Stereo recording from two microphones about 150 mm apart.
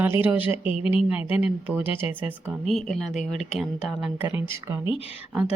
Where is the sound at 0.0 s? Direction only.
10° right (ahead or behind).